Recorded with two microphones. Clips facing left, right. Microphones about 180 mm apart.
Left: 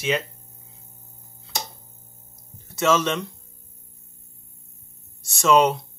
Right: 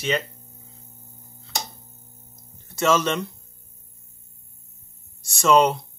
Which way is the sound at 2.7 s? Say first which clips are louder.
Even; centre (ahead or behind).